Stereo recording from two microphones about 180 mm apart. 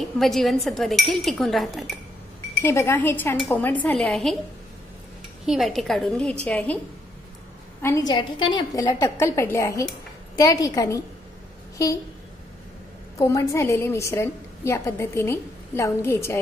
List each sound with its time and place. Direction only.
0.2 s speech: centre (ahead or behind)
2.6 s a woman's voice: 15° left (ahead or behind)
5.5 s a woman's voice: centre (ahead or behind)
7.8 s a woman's voice: 20° left (ahead or behind)
13.2 s a woman's voice: 15° left (ahead or behind)